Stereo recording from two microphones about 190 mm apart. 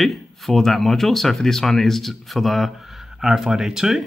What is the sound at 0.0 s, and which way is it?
Speech, centre (ahead or behind).